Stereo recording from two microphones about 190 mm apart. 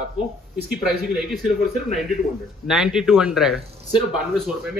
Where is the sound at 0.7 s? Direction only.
Centre (ahead or behind).